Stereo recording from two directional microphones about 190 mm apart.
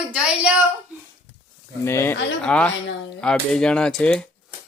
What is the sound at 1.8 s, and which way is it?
Speech, 15° left (ahead or behind).